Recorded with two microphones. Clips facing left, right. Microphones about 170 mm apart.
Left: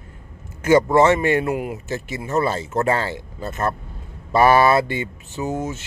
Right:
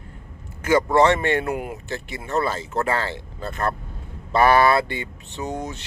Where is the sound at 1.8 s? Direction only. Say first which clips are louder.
Left 4 dB; 20° left (ahead or behind).